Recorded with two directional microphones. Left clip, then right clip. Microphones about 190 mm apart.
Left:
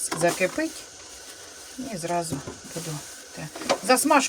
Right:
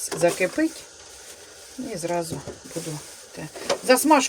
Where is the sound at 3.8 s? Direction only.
10° right (ahead or behind).